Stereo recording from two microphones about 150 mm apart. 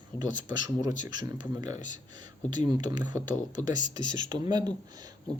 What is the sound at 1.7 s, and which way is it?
Speech, 55° left (ahead or behind).